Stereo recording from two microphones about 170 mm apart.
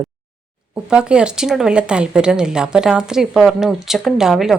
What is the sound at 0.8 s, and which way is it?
Speech, 5° right (ahead or behind).